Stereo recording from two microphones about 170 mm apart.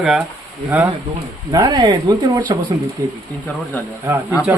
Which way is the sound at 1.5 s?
20° right (ahead or behind).